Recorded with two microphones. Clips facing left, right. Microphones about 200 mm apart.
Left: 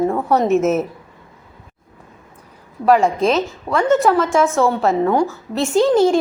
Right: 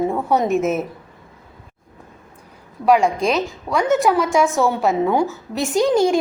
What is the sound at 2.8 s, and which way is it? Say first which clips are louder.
A woman's voice: left 2 dB; centre (ahead or behind).